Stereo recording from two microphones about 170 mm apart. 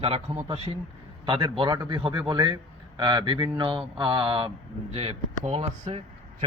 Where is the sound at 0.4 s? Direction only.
35° right (ahead or behind).